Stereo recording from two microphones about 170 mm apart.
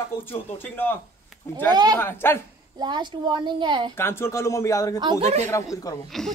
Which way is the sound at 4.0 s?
15° left (ahead or behind).